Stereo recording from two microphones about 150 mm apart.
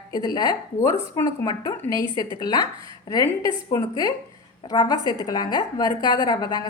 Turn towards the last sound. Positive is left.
turn(degrees=30)  # may be behind; listen again after turning